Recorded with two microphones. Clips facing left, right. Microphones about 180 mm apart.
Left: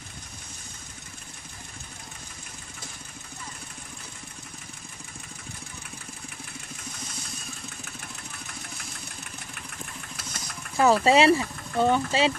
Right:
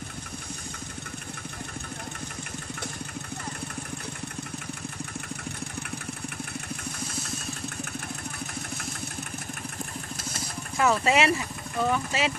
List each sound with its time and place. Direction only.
10.8 s speech: 30° left (ahead or behind)